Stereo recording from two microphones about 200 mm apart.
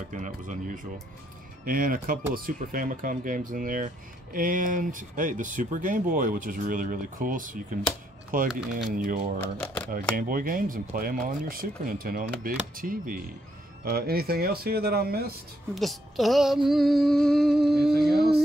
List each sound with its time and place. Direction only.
0.1 s speech: 40° right (ahead or behind)
9.4 s speech: 10° left (ahead or behind)
10.1 s speech: 45° right (ahead or behind)
15.7 s music: centre (ahead or behind)